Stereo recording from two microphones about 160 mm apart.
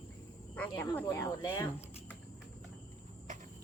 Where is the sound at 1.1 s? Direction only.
20° left (ahead or behind).